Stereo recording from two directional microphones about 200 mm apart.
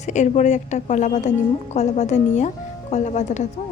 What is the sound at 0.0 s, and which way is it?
A woman's voice, 35° left (ahead or behind).